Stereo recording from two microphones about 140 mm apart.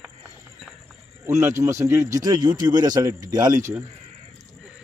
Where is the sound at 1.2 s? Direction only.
20° right (ahead or behind).